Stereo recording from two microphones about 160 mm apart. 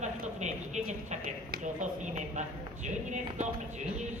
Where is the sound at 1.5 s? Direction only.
50° right (ahead or behind).